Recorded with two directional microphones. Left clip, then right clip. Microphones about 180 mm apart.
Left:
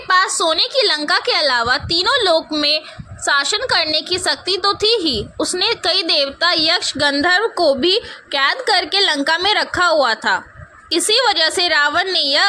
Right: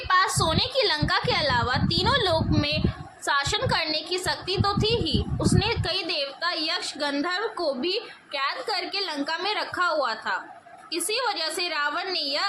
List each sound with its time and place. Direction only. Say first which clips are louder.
0.1 s a woman's voice: left 7 dB; 25° left (ahead or behind); by 12.5 s 40° left (ahead or behind)